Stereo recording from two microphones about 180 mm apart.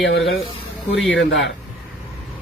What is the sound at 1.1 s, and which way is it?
Speech, 80° left.